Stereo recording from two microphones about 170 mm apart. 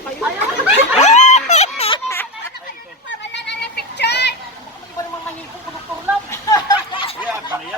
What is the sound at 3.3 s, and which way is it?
Children playing, 90° left.